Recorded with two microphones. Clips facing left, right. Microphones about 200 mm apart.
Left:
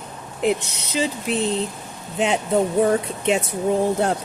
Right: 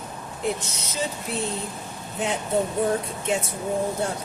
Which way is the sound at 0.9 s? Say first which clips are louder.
Left 7 dB; 75° left (ahead or behind).